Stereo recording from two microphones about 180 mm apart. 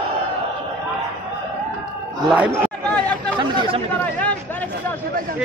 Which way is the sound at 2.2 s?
5° right (ahead or behind).